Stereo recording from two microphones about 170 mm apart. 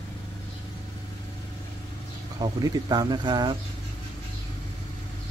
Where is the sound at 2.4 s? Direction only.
25° right (ahead or behind).